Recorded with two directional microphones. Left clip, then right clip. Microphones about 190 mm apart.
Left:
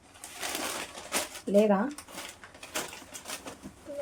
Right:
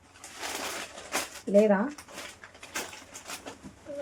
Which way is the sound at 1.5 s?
5° left (ahead or behind).